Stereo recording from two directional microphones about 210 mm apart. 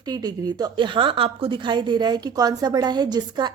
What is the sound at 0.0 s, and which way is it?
A woman's voice, 20° right (ahead or behind).